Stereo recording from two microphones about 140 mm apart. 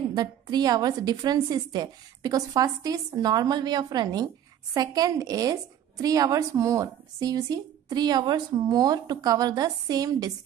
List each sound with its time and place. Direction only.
0.1 s a woman's voice: 30° right (ahead or behind)